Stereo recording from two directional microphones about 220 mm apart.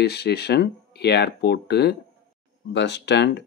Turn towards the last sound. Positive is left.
turn(degrees=50)  # may be behind; listen again after turning